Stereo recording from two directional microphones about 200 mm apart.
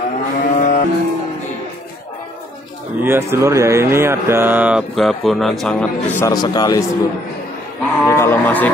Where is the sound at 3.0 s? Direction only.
10° right (ahead or behind).